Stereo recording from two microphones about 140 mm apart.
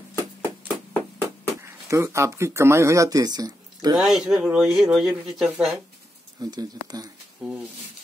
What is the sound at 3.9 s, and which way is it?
Speech, 5° right (ahead or behind).